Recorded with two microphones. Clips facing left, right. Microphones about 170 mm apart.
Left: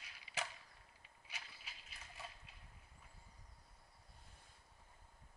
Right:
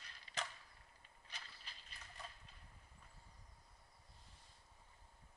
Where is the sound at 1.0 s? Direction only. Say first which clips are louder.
Left 1 dB; 10° left (ahead or behind).